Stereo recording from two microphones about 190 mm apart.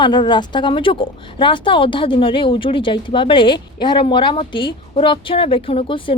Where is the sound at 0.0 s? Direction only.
25° left (ahead or behind).